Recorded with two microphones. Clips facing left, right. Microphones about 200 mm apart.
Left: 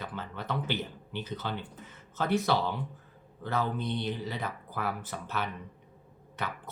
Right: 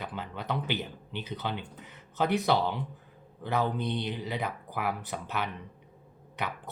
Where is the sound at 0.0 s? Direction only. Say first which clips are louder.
Right 1 dB; 15° right (ahead or behind).